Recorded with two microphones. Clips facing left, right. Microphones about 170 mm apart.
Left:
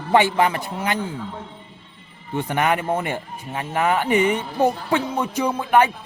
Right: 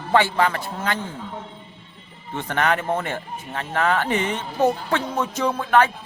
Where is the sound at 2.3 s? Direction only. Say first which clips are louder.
Left 2 dB; 15° left (ahead or behind).